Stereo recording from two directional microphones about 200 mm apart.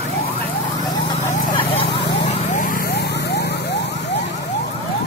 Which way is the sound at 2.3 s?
40° left (ahead or behind).